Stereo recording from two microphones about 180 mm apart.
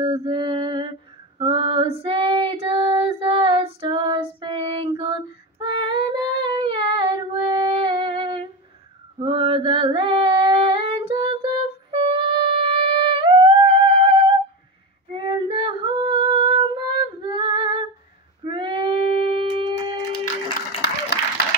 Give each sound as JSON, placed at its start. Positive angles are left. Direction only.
{"t": 0.0, "sound": "mantra", "side_deg": -30}
{"t": 1.4, "sound": "female singing", "side_deg": -30}
{"t": 11.9, "sound": "music", "side_deg": -30}
{"t": 15.1, "sound": "female singing", "side_deg": -30}
{"t": 18.4, "sound": "a sound", "side_deg": -30}
{"t": 20.8, "sound": "applause", "side_deg": 70}